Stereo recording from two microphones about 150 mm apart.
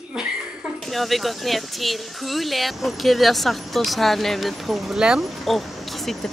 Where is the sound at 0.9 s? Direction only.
Centre (ahead or behind).